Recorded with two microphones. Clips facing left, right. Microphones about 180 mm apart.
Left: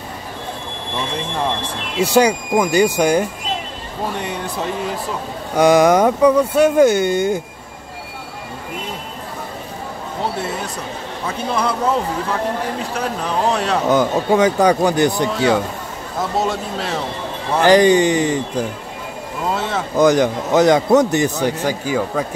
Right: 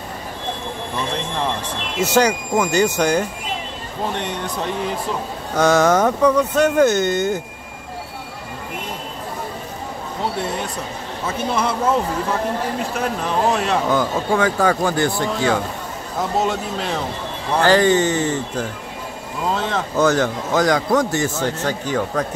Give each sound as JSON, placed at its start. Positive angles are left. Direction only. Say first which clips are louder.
{"t": 2.0, "sound": "a man's voice", "louder": "left 3 dB", "side_deg": 15}
{"t": 11.2, "sound": "speech", "louder": "left 1 dB", "side_deg": 0}
{"t": 12.9, "sound": "speech", "louder": "left 1 dB", "side_deg": 0}
{"t": 13.8, "sound": "speech", "louder": "left 4 dB", "side_deg": 20}
{"t": 16.2, "sound": "speech", "louder": "even", "side_deg": 0}
{"t": 17.6, "sound": "a man's voice", "louder": "left 3 dB", "side_deg": 15}
{"t": 20.0, "sound": "a man's voice", "louder": "left 4 dB", "side_deg": 15}